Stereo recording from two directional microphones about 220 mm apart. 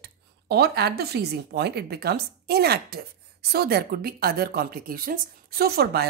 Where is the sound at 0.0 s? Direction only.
45° right (ahead or behind).